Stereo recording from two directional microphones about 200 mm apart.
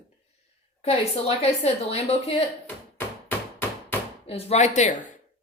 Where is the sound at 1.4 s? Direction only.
30° left (ahead or behind).